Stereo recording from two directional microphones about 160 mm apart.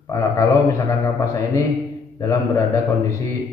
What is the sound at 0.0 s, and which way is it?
A man's voice, 20° left (ahead or behind).